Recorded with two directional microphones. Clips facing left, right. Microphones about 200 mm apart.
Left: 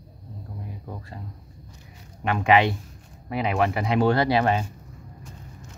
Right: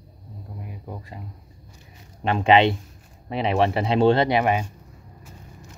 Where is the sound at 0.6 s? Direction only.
15° right (ahead or behind).